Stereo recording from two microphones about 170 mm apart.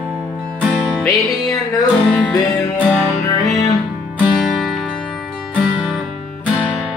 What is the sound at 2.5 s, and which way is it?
Music, 20° left (ahead or behind).